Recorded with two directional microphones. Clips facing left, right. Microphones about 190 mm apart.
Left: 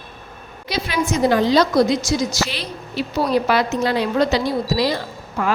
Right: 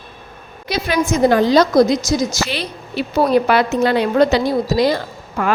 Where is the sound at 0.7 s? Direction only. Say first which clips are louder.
Right 4 dB; 50° right (ahead or behind).